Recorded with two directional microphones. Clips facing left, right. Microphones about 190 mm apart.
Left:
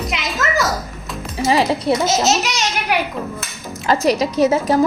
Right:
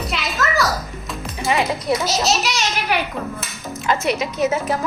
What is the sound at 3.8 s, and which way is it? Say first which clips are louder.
Speech: left 5 dB; 35° left (ahead or behind).